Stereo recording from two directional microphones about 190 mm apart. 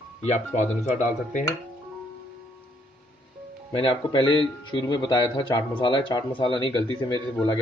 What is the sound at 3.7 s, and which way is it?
Speech, 25° left (ahead or behind).